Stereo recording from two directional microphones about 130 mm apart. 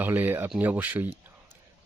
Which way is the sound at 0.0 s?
15° right (ahead or behind).